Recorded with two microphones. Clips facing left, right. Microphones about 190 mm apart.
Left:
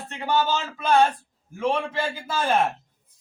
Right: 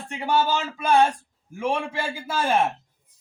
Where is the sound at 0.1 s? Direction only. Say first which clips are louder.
Right 1 dB; 10° right (ahead or behind).